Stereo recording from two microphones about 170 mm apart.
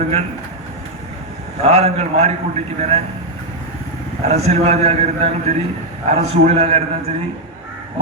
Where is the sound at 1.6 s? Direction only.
35° right (ahead or behind).